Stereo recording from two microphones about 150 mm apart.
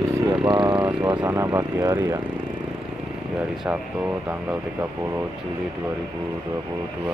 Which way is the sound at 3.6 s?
10° right (ahead or behind).